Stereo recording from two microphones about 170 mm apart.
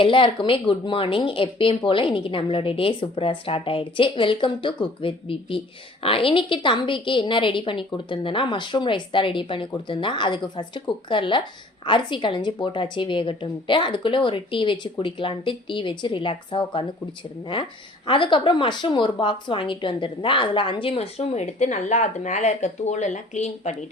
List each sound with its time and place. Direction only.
0.0 s speech: 30° left (ahead or behind)